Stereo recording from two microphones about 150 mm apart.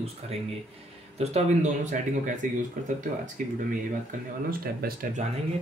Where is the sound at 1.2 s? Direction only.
55° right (ahead or behind).